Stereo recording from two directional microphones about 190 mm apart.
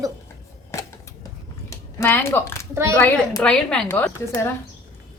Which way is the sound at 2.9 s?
15° left (ahead or behind).